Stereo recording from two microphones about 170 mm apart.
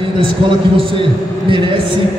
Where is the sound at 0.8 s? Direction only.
30° right (ahead or behind).